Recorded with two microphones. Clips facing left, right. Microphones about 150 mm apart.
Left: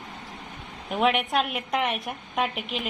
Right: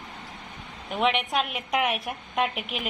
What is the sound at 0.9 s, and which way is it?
A woman's voice, centre (ahead or behind).